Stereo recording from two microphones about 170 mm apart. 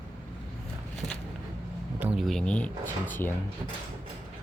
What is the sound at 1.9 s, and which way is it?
Speech, 5° right (ahead or behind).